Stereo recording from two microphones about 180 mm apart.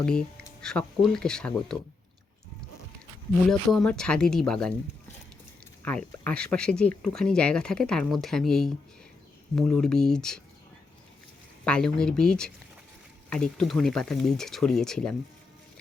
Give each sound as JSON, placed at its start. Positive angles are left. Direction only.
{"t": 0.0, "sound": "speech", "side_deg": 5}
{"t": 3.7, "sound": "speech", "side_deg": 5}
{"t": 5.8, "sound": "speech", "side_deg": 5}
{"t": 11.6, "sound": "speech", "side_deg": 5}